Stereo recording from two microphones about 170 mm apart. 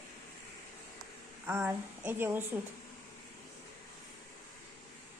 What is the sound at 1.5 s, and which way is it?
A woman's voice, 10° right (ahead or behind).